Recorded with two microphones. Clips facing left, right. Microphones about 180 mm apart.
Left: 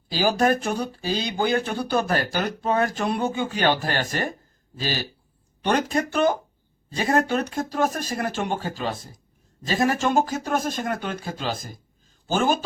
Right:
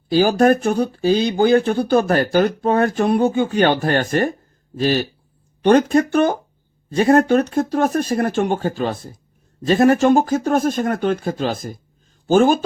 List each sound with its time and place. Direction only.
0.1 s speech: 50° right (ahead or behind)